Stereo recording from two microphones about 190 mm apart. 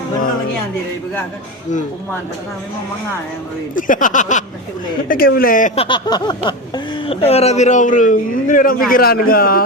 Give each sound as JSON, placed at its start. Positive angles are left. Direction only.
{"t": 3.8, "sound": "a man's voice", "side_deg": 45}
{"t": 5.7, "sound": "a man's voice", "side_deg": 25}